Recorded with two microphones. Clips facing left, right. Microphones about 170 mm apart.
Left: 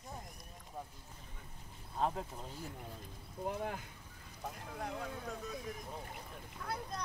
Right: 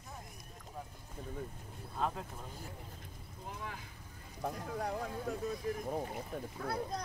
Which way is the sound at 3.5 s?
55° left (ahead or behind).